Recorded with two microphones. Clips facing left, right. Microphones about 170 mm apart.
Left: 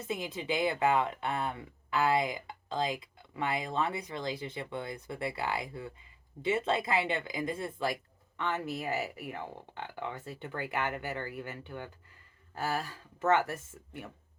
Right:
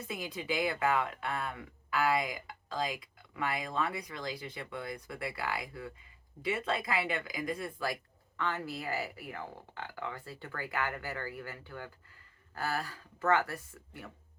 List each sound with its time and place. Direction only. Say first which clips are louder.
0.1 s speech: left 3 dB; 25° left (ahead or behind)